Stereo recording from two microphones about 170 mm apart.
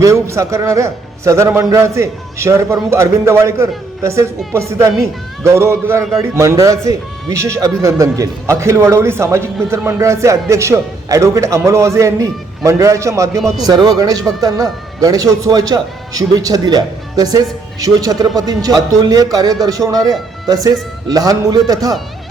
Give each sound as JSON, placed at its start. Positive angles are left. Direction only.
{"t": 0.0, "sound": "a man's voice", "side_deg": -15}